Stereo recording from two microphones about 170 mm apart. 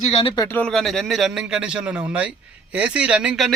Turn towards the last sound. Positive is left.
turn(degrees=-5)  # may be behind; listen again after turning